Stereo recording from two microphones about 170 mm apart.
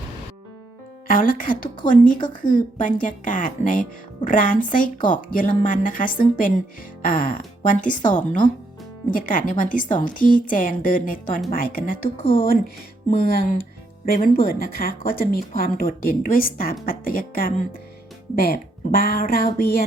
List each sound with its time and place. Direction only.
1.0 s speech: 55° left (ahead or behind)